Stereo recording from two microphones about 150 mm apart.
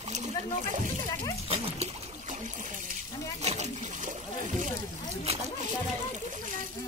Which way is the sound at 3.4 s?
45° right (ahead or behind).